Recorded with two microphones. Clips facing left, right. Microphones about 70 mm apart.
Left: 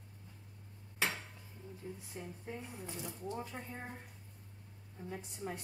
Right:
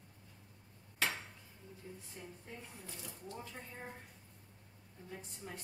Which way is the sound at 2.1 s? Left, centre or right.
Centre.